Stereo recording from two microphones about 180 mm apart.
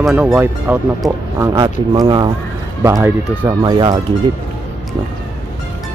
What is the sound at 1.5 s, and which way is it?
Speech, 25° right (ahead or behind).